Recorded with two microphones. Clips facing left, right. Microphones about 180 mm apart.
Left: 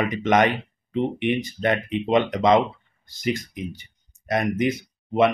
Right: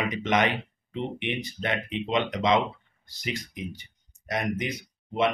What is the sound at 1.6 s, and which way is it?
Speech, 50° left (ahead or behind).